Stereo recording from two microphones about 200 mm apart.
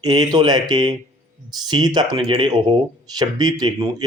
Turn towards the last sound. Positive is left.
turn(degrees=-20)  # may be behind; listen again after turning